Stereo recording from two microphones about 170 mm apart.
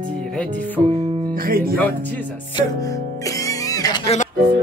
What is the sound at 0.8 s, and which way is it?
Music, 35° right (ahead or behind).